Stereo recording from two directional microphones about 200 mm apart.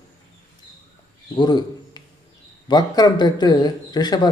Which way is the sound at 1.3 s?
20° left (ahead or behind).